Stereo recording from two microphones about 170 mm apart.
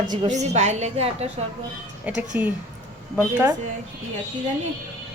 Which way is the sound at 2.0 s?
10° right (ahead or behind).